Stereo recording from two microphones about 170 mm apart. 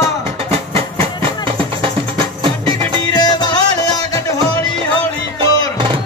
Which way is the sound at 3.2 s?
25° left (ahead or behind).